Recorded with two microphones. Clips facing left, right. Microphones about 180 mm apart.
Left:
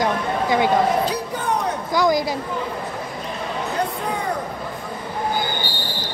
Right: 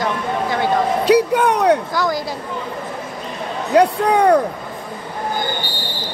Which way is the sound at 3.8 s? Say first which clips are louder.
Right 15 dB; 75° right (ahead or behind).